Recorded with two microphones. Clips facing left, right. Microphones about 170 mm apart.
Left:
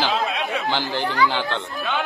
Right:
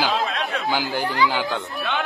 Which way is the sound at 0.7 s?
10° right (ahead or behind).